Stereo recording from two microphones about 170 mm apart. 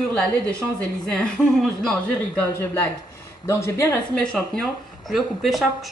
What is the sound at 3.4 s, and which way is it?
Speech, 15° left (ahead or behind).